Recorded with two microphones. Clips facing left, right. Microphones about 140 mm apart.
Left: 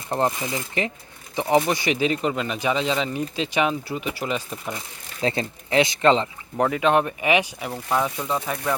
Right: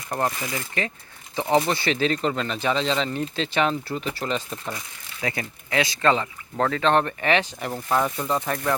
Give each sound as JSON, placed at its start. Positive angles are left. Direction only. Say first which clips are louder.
{"t": 0.1, "sound": "speech", "louder": "left 3 dB", "side_deg": 20}
{"t": 5.2, "sound": "speech", "louder": "left 5 dB", "side_deg": 25}
{"t": 7.7, "sound": "speech", "louder": "right 1 dB", "side_deg": 0}